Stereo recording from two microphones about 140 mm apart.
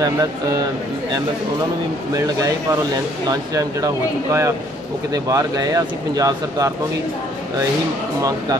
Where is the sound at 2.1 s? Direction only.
25° right (ahead or behind).